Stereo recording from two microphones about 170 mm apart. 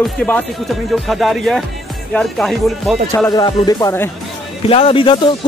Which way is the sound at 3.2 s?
25° left (ahead or behind).